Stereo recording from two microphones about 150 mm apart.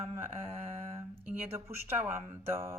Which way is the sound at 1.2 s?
10° right (ahead or behind).